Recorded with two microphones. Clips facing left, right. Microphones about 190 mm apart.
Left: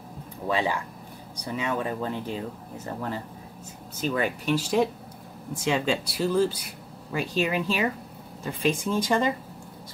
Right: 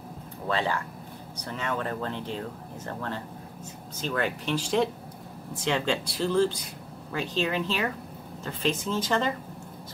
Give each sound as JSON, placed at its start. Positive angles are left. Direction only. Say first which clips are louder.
{"t": 0.5, "sound": "speech", "louder": "left 2 dB", "side_deg": 15}